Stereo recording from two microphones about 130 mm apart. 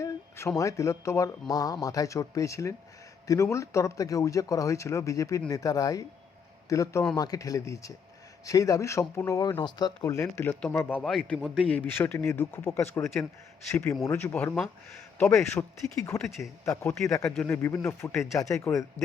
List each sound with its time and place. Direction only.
0.0 s speech: 20° left (ahead or behind)
11.0 s a man's voice: centre (ahead or behind); by 16.9 s 20° left (ahead or behind)
17.2 s speech: 5° left (ahead or behind)
17.5 s speech: 20° left (ahead or behind)